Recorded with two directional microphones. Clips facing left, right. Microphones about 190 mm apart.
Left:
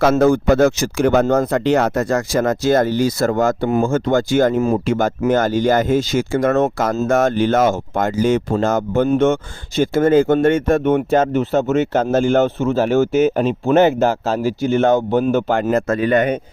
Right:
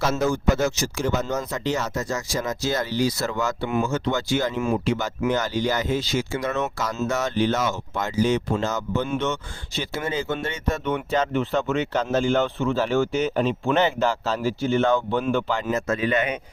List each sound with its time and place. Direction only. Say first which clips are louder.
0.0 s speech: left 9 dB; 60° left (ahead or behind)